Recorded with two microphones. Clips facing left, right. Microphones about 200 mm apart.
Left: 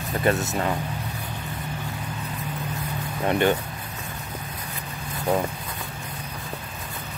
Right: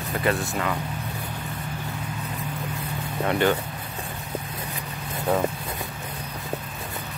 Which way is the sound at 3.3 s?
20° left (ahead or behind).